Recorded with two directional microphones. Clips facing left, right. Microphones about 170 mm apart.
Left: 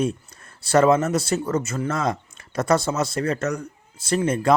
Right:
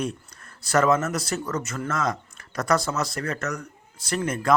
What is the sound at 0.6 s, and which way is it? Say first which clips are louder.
Speech: left 4 dB; 30° left (ahead or behind).